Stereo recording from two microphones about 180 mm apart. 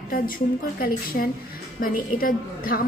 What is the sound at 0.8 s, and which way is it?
A woman's voice, 55° left (ahead or behind).